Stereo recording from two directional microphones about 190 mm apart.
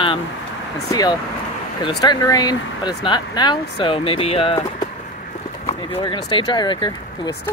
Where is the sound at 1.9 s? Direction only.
20° left (ahead or behind).